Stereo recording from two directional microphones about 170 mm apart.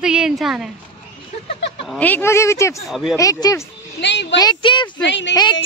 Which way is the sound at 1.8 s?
5° left (ahead or behind).